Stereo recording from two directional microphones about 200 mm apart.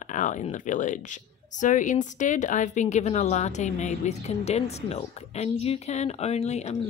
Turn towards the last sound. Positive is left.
turn(degrees=35)  # may be behind; listen again after turning